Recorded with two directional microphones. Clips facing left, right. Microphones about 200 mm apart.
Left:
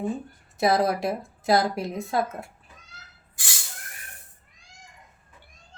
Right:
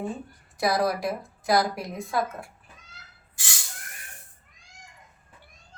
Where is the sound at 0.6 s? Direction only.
25° left (ahead or behind).